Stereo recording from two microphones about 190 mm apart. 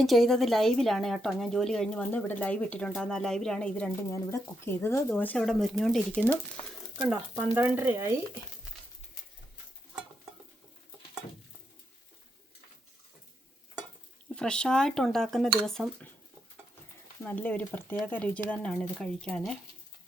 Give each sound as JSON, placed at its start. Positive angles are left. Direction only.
{"t": 0.0, "sound": "a woman's voice", "side_deg": 0}
{"t": 7.5, "sound": "speech", "side_deg": -10}
{"t": 14.3, "sound": "a woman's voice", "side_deg": 5}
{"t": 17.2, "sound": "a woman's voice", "side_deg": 5}